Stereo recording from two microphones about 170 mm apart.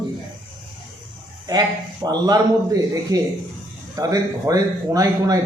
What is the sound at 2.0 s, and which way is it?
A man's voice, 20° right (ahead or behind).